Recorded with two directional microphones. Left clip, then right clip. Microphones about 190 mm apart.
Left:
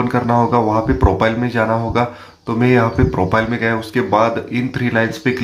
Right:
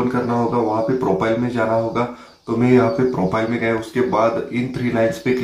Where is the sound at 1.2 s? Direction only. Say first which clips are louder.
Left 3 dB; 25° left (ahead or behind).